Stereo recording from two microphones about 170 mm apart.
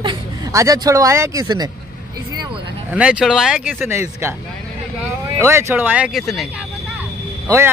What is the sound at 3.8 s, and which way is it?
Speech, 15° right (ahead or behind).